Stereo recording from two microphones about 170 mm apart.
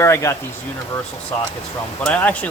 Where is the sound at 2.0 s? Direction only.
10° left (ahead or behind).